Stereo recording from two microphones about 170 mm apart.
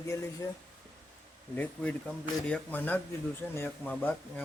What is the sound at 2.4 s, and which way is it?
A man's voice, 10° left (ahead or behind).